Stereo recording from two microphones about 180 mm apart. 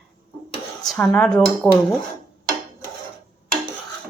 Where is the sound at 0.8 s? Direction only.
5° left (ahead or behind).